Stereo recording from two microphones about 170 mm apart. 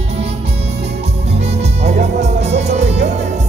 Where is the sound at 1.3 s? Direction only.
40° right (ahead or behind).